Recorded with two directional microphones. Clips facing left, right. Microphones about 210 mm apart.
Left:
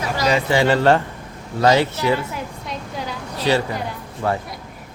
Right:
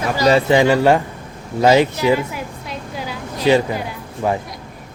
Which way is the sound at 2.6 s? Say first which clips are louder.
Right 1 dB; 5° right (ahead or behind).